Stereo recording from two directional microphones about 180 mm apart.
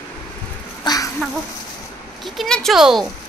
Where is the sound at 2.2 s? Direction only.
Centre (ahead or behind).